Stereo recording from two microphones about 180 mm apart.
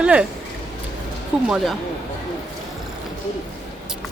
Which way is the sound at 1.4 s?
Centre (ahead or behind).